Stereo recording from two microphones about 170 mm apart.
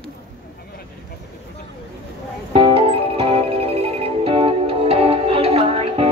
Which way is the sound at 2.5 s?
30° right (ahead or behind).